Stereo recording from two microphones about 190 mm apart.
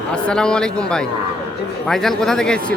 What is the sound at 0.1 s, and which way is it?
A man's voice, 5° left (ahead or behind).